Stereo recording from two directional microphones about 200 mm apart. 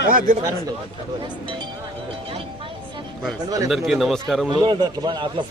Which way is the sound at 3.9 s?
Centre (ahead or behind).